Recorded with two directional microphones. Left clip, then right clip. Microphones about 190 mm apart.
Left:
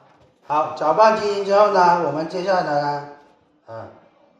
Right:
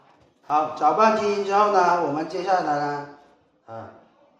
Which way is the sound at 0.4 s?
35° right (ahead or behind).